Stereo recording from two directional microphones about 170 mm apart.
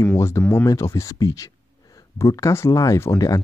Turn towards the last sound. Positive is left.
turn(degrees=20)  # may be behind; listen again after turning